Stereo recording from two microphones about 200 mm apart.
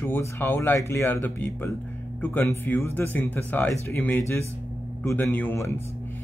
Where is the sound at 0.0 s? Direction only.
10° left (ahead or behind).